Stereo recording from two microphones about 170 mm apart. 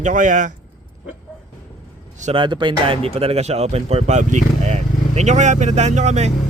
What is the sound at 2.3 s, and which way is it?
Speech, 30° right (ahead or behind).